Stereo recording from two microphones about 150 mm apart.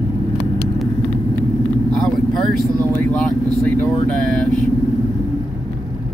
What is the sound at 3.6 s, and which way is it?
Vehicle, 10° left (ahead or behind).